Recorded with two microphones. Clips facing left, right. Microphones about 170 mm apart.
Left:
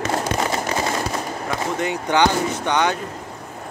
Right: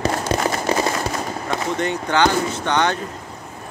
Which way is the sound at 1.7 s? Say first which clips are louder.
Left 1 dB; 10° left (ahead or behind).